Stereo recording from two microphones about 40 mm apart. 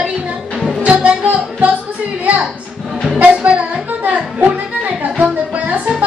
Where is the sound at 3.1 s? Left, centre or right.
Right.